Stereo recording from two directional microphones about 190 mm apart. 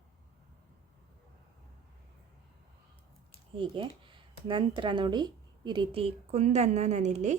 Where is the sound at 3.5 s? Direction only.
25° right (ahead or behind).